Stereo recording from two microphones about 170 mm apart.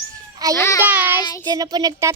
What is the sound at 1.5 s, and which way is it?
Speech, 25° right (ahead or behind).